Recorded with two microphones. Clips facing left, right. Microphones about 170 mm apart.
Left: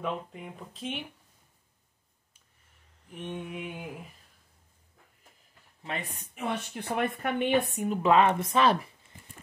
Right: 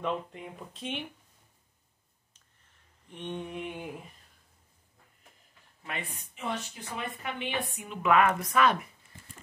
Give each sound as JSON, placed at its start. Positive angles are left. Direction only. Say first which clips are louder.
{"t": 0.0, "sound": "speech", "louder": "right 1 dB", "side_deg": 0}
{"t": 3.1, "sound": "speech", "louder": "even", "side_deg": 5}
{"t": 6.3, "sound": "a woman's voice", "louder": "left 3 dB", "side_deg": 60}
{"t": 8.0, "sound": "speech", "louder": "left 1 dB", "side_deg": 30}